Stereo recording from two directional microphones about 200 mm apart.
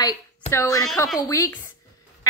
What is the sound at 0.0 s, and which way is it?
A woman's voice, 15° left (ahead or behind).